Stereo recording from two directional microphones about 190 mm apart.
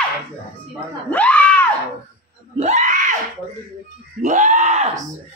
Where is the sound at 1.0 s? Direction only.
10° left (ahead or behind).